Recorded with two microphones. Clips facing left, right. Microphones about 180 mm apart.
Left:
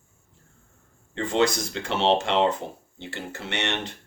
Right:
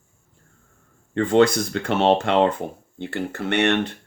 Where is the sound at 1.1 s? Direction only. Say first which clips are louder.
Right 6 dB; 55° right (ahead or behind).